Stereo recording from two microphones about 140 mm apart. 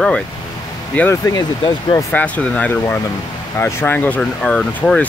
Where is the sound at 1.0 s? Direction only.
20° left (ahead or behind).